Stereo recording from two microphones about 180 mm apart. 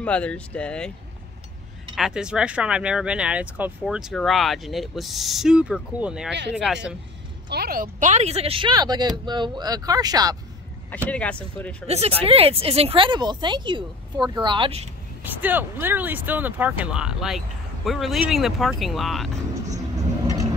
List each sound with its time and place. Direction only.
0.0 s speech: 5° left (ahead or behind)
2.0 s speech: 5° right (ahead or behind)
7.4 s speech: 60° right (ahead or behind); by 10.3 s 20° right (ahead or behind)
11.1 s speech: 5° left (ahead or behind)
12.2 s speech: 30° right (ahead or behind)
15.2 s speech: 10° right (ahead or behind)